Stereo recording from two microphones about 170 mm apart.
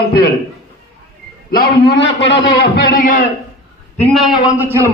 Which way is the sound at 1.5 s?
70° left (ahead or behind).